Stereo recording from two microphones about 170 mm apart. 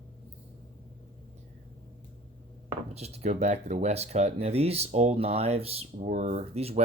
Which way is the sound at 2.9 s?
40° right (ahead or behind).